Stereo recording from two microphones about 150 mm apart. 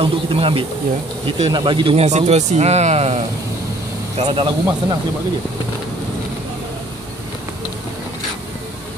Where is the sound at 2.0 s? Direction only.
50° right (ahead or behind).